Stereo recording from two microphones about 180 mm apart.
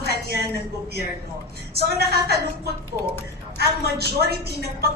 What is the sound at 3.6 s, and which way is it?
A woman's voice, 65° right (ahead or behind).